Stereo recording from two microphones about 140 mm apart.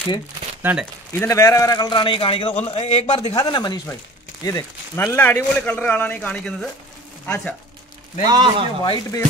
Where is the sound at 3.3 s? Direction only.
30° left (ahead or behind).